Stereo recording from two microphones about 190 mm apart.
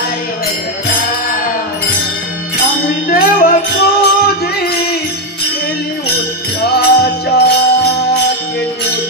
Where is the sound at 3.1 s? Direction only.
50° left (ahead or behind).